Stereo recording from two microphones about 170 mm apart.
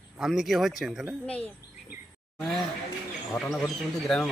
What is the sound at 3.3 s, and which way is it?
Speech, centre (ahead or behind).